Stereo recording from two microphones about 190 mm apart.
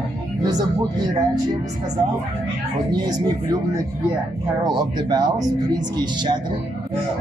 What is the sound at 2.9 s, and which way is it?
Speech, 20° right (ahead or behind).